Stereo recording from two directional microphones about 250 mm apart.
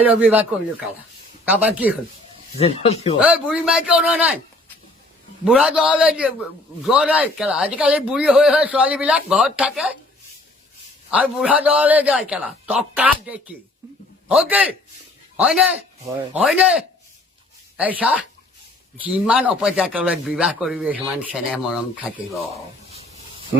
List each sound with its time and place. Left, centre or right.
0.0 s speech: centre
2.6 s speech: left
3.2 s speech: centre
5.5 s speech: centre
11.1 s speech: centre
22.9 s snake: right